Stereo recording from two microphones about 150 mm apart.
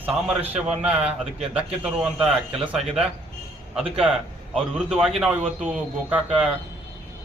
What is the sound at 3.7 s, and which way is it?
A man's voice, 5° right (ahead or behind).